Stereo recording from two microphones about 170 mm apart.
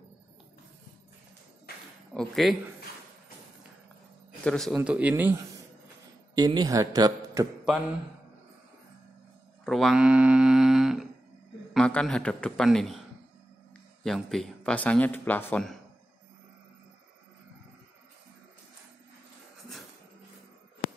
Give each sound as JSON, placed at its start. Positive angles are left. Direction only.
{"t": 2.1, "sound": "speech", "side_deg": 0}
{"t": 4.5, "sound": "speech", "side_deg": 0}
{"t": 6.3, "sound": "speech", "side_deg": -25}
{"t": 9.7, "sound": "speech", "side_deg": 0}
{"t": 14.0, "sound": "speech", "side_deg": 0}